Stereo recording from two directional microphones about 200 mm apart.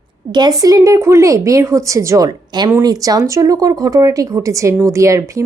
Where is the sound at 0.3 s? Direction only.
20° right (ahead or behind).